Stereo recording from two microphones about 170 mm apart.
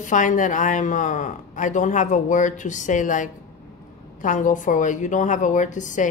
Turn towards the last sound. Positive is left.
turn(degrees=45)  # may be behind; listen again after turning